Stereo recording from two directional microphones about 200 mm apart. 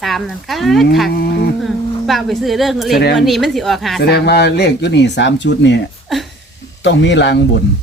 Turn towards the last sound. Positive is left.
turn(degrees=60)  # may be behind; listen again after turning